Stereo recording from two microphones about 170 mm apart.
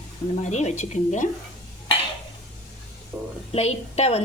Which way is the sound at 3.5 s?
40° left (ahead or behind).